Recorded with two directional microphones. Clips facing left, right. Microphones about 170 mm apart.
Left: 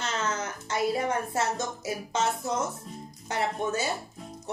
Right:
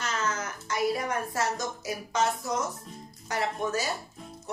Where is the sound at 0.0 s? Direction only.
30° left (ahead or behind).